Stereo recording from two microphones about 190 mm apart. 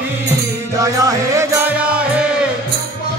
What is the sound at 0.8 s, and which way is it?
Music, 15° right (ahead or behind).